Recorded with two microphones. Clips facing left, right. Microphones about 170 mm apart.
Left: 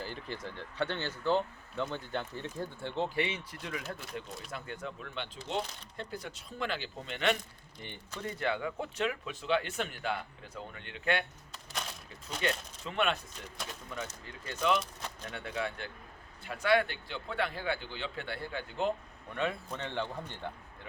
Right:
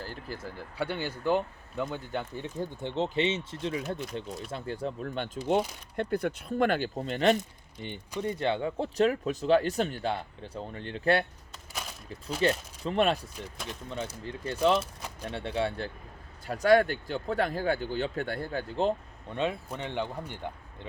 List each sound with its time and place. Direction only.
0.0 s speech: 5° right (ahead or behind); by 7.3 s 40° right (ahead or behind)
7.8 s speech: 20° right (ahead or behind); by 11.3 s 35° right (ahead or behind)
11.5 s a sound: 5° right (ahead or behind)
12.4 s speech: 35° right (ahead or behind)
16.5 s speech: 40° right (ahead or behind)
19.3 s speech: 20° right (ahead or behind)